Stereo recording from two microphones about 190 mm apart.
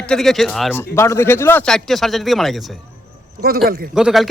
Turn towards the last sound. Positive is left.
turn(degrees=-5)  # may be behind; listen again after turning